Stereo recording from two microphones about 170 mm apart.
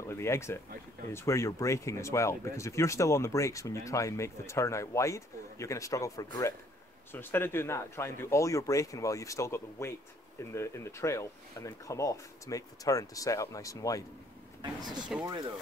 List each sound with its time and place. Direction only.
0.0 s speech: 15° left (ahead or behind)
14.6 s speech: 25° right (ahead or behind)